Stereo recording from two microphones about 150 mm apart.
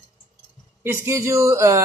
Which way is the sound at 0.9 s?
20° right (ahead or behind).